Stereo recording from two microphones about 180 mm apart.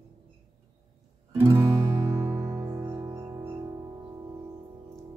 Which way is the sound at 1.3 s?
20° right (ahead or behind).